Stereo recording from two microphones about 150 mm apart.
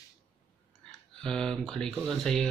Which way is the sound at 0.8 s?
5° left (ahead or behind).